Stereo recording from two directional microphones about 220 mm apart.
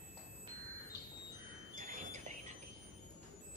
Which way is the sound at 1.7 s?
35° right (ahead or behind).